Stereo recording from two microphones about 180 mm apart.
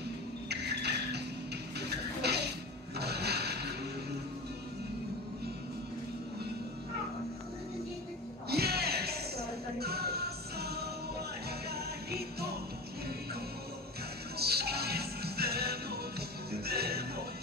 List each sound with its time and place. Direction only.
0.5 s music: 65° right (ahead or behind)
3.0 s a sound: 65° right (ahead or behind)
8.5 s music: 60° right (ahead or behind)
14.4 s music: 60° right (ahead or behind)